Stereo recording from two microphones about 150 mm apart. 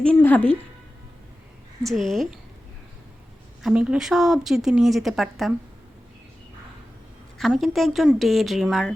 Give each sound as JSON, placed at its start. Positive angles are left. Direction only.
{"t": 0.0, "sound": "a woman's voice", "side_deg": 10}
{"t": 1.8, "sound": "speech", "side_deg": 0}
{"t": 3.6, "sound": "speech", "side_deg": -5}
{"t": 7.3, "sound": "speech", "side_deg": 0}